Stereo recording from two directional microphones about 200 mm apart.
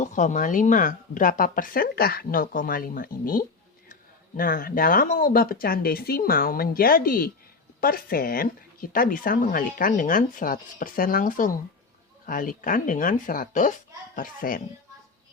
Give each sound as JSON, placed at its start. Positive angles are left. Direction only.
{"t": 0.0, "sound": "speech", "side_deg": 40}